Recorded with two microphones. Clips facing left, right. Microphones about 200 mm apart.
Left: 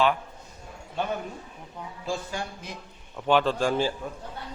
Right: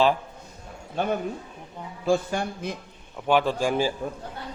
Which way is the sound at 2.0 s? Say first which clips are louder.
Right 8 dB; 60° right (ahead or behind).